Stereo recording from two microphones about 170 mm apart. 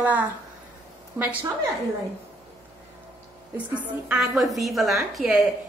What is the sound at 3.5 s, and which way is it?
A woman's voice, 10° right (ahead or behind).